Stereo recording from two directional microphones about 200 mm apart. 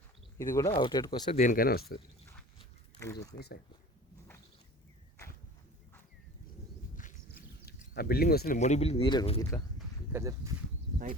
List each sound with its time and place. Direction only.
0.3 s speech: 15° left (ahead or behind)
1.4 s speech: 40° left (ahead or behind)
2.6 s a sound: 15° left (ahead or behind)
3.3 s speech: 55° left (ahead or behind)
6.9 s a sound: 45° left (ahead or behind)
8.5 s speech: 35° left (ahead or behind)
10.1 s speech: 15° right (ahead or behind)